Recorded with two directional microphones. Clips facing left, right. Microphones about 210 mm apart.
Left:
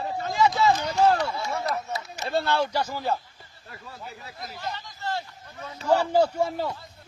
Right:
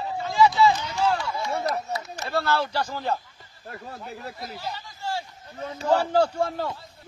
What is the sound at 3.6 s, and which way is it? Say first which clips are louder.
Speech: right 6 dB; 50° right (ahead or behind).